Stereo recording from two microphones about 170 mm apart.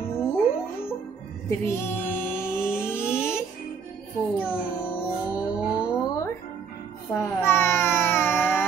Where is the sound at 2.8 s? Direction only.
15° left (ahead or behind).